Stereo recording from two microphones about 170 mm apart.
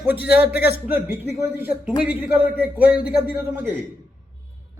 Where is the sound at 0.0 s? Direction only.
10° right (ahead or behind).